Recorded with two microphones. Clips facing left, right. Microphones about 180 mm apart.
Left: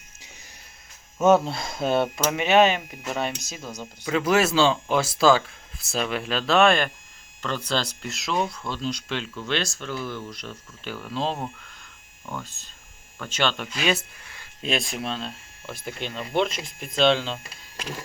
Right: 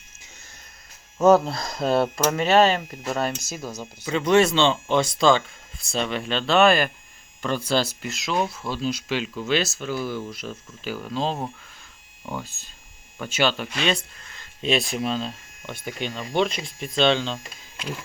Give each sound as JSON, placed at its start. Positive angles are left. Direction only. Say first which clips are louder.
{"t": 1.2, "sound": "speech", "louder": "right 2 dB", "side_deg": 0}
{"t": 1.5, "sound": "speech", "louder": "right 1 dB", "side_deg": 25}
{"t": 1.8, "sound": "speech", "louder": "right 2 dB", "side_deg": 0}
{"t": 12.2, "sound": "speech", "louder": "right 3 dB", "side_deg": -15}
{"t": 13.8, "sound": "a sound", "louder": "left 1 dB", "side_deg": 10}
{"t": 14.7, "sound": "speech", "louder": "right 4 dB", "side_deg": 0}